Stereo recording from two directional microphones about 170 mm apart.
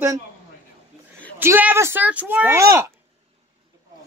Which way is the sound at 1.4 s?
10° right (ahead or behind).